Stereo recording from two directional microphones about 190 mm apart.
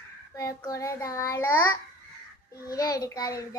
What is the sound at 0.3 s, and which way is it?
A child's voice, 15° left (ahead or behind).